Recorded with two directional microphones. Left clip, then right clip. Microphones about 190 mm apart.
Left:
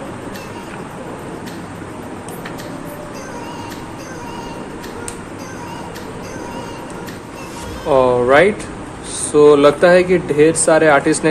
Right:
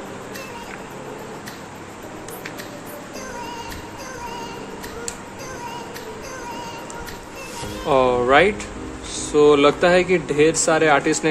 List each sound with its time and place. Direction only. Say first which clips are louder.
7.9 s speech: left 4 dB; 15° right (ahead or behind)